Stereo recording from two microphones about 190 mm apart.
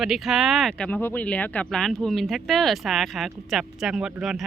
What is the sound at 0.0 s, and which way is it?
Speech, centre (ahead or behind).